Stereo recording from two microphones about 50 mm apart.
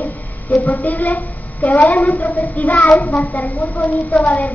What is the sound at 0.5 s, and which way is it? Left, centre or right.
Child singing, left.